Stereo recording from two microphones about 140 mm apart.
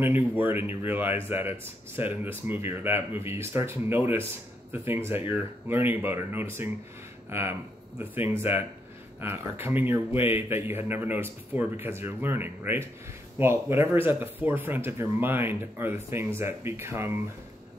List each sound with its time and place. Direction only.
0.0 s speech: 15° right (ahead or behind)